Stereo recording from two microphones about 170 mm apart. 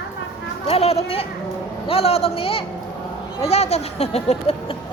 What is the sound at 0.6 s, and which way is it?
Speech, 35° left (ahead or behind).